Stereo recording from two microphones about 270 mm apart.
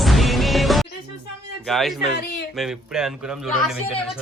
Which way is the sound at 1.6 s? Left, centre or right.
Centre.